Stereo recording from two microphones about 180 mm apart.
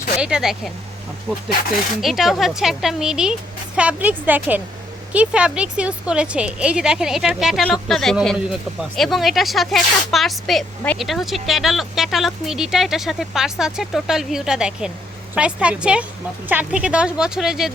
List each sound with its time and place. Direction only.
0.2 s a woman's voice: 5° right (ahead or behind)